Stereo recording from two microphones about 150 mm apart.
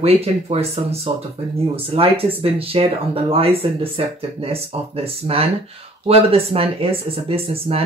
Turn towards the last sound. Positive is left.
turn(degrees=-40)  # may be behind; listen again after turning